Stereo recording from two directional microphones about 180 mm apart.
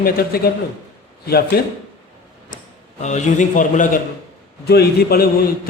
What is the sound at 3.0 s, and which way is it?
A man's voice, 40° left (ahead or behind).